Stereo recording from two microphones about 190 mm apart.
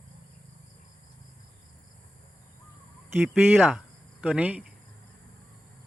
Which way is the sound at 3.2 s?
Centre (ahead or behind).